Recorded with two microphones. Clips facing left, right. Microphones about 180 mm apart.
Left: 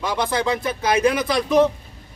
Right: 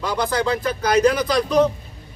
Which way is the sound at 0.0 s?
25° left (ahead or behind).